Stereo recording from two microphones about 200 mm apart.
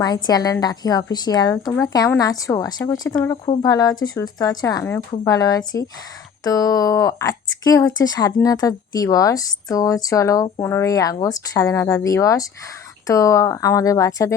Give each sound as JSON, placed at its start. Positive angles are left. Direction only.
{"t": 0.0, "sound": "a woman's voice", "side_deg": 20}